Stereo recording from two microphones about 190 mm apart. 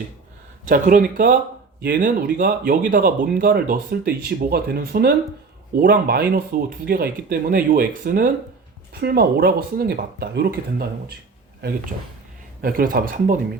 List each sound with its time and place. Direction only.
0.6 s speech: 45° right (ahead or behind)
12.6 s speech: 50° right (ahead or behind)